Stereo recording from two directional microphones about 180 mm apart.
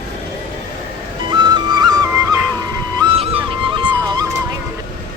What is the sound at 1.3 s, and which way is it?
Music, 25° right (ahead or behind).